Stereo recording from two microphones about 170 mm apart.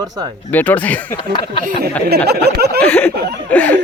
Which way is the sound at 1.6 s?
55° right (ahead or behind).